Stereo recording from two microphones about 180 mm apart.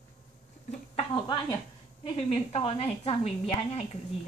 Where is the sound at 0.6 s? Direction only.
30° left (ahead or behind).